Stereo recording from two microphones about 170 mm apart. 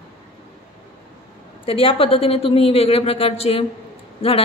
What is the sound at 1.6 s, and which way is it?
A woman's voice, 30° left (ahead or behind).